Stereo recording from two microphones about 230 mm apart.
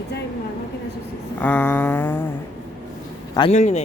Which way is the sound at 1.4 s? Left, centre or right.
Centre.